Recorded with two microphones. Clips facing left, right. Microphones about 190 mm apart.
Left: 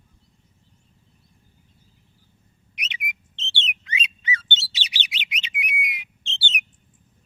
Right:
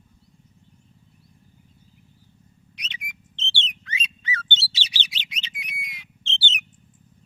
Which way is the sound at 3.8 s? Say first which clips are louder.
Left 3 dB; 15° left (ahead or behind).